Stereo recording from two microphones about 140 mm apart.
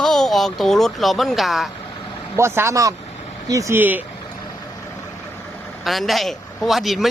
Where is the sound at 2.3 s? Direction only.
20° right (ahead or behind).